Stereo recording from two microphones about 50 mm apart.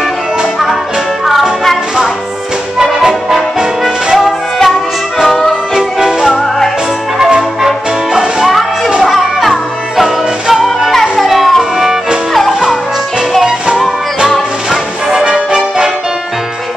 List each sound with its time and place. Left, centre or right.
2.8 s music: centre
3.3 s brass instrument: centre
5.8 s music: centre
7.2 s brass instrument: centre
7.6 s music: centre
14.7 s music: centre
15.2 s brass instrument: centre